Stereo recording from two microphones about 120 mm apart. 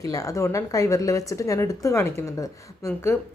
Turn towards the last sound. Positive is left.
turn(degrees=25)  # may be behind; listen again after turning